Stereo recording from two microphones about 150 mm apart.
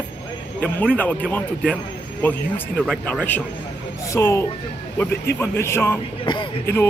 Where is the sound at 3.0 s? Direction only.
10° left (ahead or behind).